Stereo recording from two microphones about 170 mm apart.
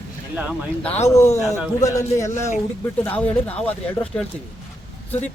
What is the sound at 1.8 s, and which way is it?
Speech, 20° left (ahead or behind).